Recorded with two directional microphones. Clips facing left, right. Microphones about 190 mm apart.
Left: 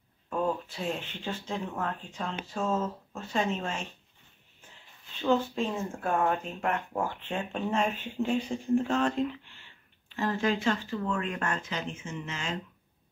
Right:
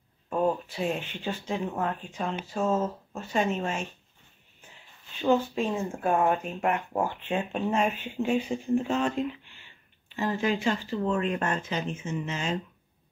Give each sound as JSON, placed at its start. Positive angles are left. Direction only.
{"t": 0.3, "sound": "speech", "side_deg": -20}
{"t": 2.8, "sound": "speech", "side_deg": -25}
{"t": 3.3, "sound": "speech", "side_deg": -10}
{"t": 5.3, "sound": "speech", "side_deg": -10}
{"t": 10.1, "sound": "speech", "side_deg": -10}